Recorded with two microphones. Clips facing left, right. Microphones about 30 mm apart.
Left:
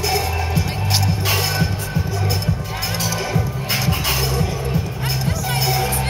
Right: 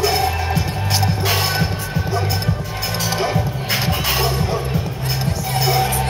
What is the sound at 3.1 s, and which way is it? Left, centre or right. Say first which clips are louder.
Music: right 3 dB; right.